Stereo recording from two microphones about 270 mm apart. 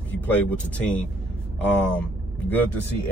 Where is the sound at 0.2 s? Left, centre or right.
Centre.